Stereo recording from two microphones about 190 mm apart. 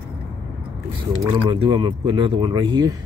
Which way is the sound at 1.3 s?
25° right (ahead or behind).